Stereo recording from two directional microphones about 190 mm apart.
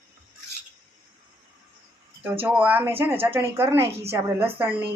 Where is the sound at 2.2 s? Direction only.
10° right (ahead or behind).